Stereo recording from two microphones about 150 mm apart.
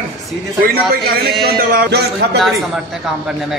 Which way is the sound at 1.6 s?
80° right.